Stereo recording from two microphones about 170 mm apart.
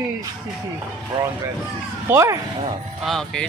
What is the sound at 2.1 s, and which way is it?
Speech, 15° right (ahead or behind).